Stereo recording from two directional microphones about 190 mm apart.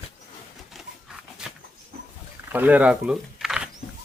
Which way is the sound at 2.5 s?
10° right (ahead or behind).